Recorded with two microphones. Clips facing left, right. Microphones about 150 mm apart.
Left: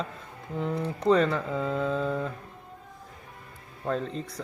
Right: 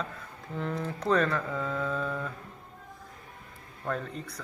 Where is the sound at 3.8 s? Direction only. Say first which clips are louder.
Left 4 dB; 25° left (ahead or behind).